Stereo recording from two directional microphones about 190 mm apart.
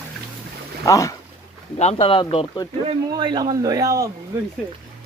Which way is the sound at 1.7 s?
30° left (ahead or behind).